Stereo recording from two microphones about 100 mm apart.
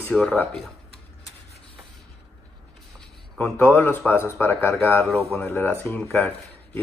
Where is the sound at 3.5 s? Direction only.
20° left (ahead or behind).